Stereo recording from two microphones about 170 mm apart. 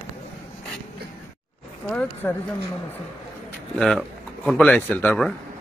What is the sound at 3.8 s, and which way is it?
Speech, centre (ahead or behind).